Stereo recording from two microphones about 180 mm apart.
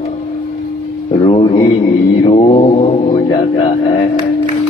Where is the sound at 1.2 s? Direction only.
25° left (ahead or behind).